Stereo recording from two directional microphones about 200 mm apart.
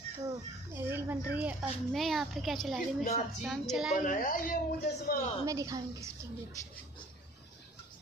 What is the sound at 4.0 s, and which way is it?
Speech, 45° left (ahead or behind).